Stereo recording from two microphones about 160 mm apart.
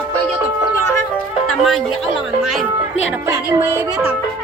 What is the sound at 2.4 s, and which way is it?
Speech, centre (ahead or behind).